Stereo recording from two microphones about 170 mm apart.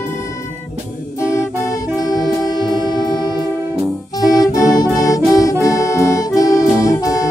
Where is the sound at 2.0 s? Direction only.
25° left (ahead or behind).